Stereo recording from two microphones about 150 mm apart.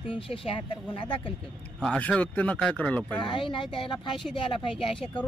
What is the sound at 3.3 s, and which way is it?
Speech, 35° left (ahead or behind).